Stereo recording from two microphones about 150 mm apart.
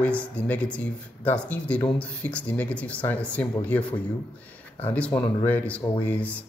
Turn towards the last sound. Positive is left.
turn(degrees=10)  # may be behind; listen again after turning